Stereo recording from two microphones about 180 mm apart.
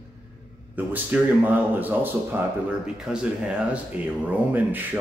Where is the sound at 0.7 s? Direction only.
10° right (ahead or behind).